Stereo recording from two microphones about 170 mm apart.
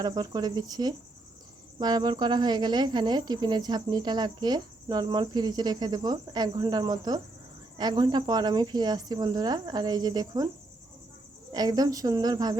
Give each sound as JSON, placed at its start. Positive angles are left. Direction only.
{"t": 0.0, "sound": "speech", "side_deg": -25}
{"t": 11.5, "sound": "speech", "side_deg": -20}